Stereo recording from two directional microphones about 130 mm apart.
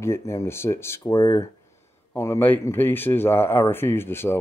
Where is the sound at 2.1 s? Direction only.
20° left (ahead or behind).